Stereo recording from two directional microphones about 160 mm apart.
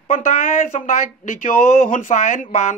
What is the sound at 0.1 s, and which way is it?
Speech, 55° left (ahead or behind).